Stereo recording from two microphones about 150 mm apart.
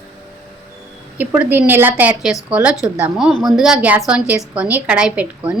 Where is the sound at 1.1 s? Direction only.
10° right (ahead or behind).